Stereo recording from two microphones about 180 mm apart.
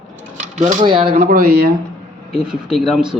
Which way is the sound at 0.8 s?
30° right (ahead or behind).